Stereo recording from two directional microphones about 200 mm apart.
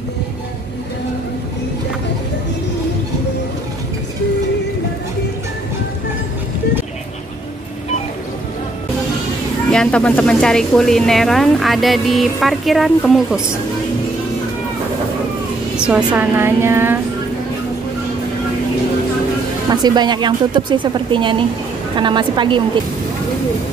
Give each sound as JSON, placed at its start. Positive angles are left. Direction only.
{"t": 9.7, "sound": "speech", "side_deg": 5}
{"t": 15.7, "sound": "a woman's voice", "side_deg": -5}
{"t": 19.7, "sound": "a woman's voice", "side_deg": -20}